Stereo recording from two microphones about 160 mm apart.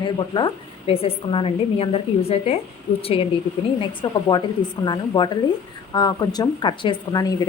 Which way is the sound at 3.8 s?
30° left (ahead or behind).